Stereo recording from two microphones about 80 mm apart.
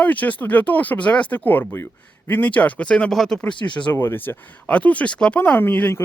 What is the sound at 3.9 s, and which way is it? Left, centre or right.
Speech, left.